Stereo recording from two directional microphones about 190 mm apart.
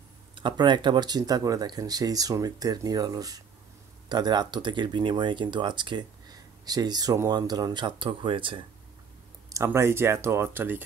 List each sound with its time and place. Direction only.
0.3 s speech: 25° right (ahead or behind)
9.5 s speech: 15° right (ahead or behind)